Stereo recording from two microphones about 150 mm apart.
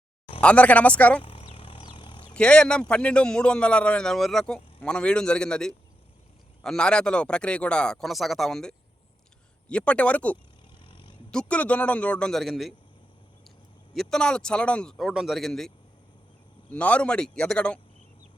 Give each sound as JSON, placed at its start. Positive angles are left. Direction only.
{"t": 0.4, "sound": "a man's voice", "side_deg": 10}
{"t": 1.2, "sound": "a sound", "side_deg": 35}
{"t": 2.3, "sound": "a man's voice", "side_deg": 5}
{"t": 10.8, "sound": "a sound", "side_deg": 35}
{"t": 11.3, "sound": "a man's voice", "side_deg": 5}
{"t": 13.9, "sound": "a man's voice", "side_deg": 5}